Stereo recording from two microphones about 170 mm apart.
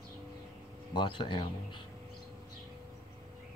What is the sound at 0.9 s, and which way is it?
Speech, 25° left (ahead or behind).